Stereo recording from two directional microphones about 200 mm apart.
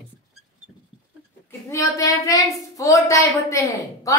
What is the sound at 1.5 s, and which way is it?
A woman's voice, 15° left (ahead or behind).